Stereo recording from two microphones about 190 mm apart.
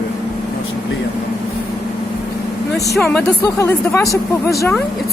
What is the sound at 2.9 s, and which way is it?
Speech, centre (ahead or behind).